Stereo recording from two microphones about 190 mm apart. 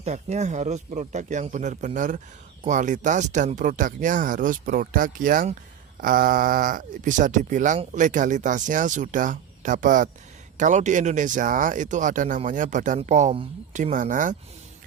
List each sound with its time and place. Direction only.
0.0 s speech: 35° right (ahead or behind)